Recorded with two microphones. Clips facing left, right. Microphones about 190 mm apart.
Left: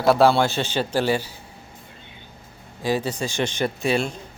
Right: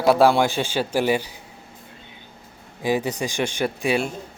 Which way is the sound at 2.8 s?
15° right (ahead or behind).